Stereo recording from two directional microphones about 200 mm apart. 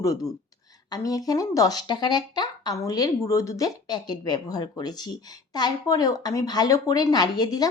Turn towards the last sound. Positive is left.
turn(degrees=20)  # may be behind; listen again after turning